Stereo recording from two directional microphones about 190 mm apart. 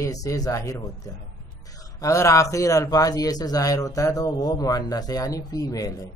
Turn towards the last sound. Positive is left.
turn(degrees=20)  # may be behind; listen again after turning